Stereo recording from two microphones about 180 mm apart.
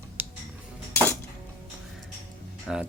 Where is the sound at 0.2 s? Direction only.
10° right (ahead or behind).